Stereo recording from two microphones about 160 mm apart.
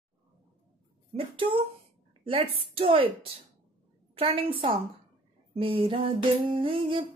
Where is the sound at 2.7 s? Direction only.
35° right (ahead or behind).